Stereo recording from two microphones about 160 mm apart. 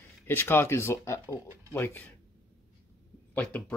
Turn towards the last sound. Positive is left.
turn(degrees=10)  # may be behind; listen again after turning